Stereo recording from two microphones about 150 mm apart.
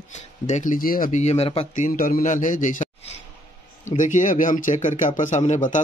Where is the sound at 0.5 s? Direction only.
55° left (ahead or behind).